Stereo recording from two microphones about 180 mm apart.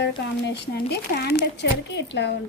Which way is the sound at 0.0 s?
70° left (ahead or behind).